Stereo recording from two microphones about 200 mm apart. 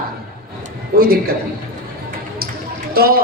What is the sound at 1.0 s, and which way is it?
Speech, 50° right (ahead or behind).